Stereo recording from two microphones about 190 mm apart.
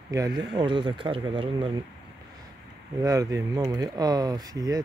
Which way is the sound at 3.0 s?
15° right (ahead or behind).